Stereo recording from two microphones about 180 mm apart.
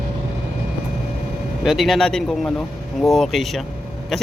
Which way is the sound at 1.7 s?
Centre (ahead or behind).